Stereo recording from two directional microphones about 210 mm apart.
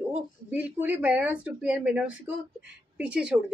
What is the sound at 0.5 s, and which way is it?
A woman's voice, 5° right (ahead or behind).